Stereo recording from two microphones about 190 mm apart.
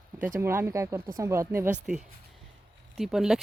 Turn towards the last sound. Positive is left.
turn(degrees=-5)  # may be behind; listen again after turning